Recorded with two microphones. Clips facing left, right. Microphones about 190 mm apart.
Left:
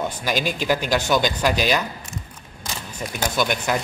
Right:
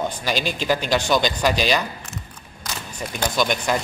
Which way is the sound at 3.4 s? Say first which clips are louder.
Right 1 dB; 5° left (ahead or behind).